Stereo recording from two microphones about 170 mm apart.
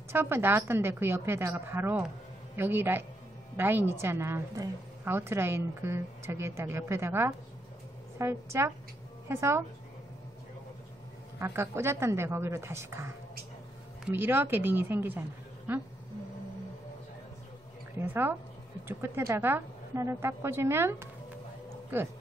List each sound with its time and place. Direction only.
0.1 s a woman's voice: 15° right (ahead or behind)
11.3 s a woman's voice: 15° right (ahead or behind)
17.9 s a woman's voice: 10° right (ahead or behind)